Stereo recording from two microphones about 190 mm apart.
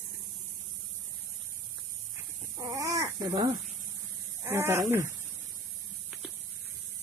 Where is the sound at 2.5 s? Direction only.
15° right (ahead or behind).